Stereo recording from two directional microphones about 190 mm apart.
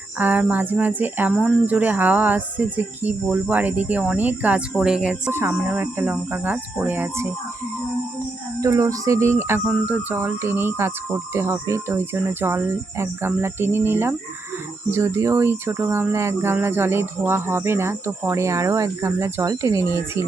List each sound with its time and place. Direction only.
0.2 s speech: 10° right (ahead or behind)
8.6 s speech: 15° right (ahead or behind)